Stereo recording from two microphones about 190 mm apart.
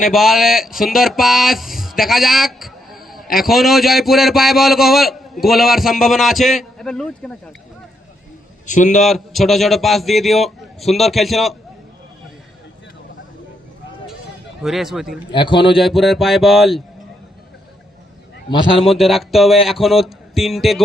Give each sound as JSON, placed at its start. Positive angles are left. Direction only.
{"t": 0.1, "sound": "a man's voice", "side_deg": 0}
{"t": 8.6, "sound": "a man's voice", "side_deg": 40}
{"t": 9.0, "sound": "a man's voice", "side_deg": 0}
{"t": 14.6, "sound": "a man's voice", "side_deg": 0}
{"t": 15.3, "sound": "a man's voice", "side_deg": 25}
{"t": 15.8, "sound": "a man's voice", "side_deg": 0}
{"t": 18.8, "sound": "a man's voice", "side_deg": 0}